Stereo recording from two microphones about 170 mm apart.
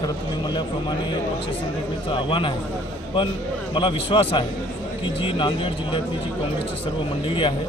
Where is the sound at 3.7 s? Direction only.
30° left (ahead or behind).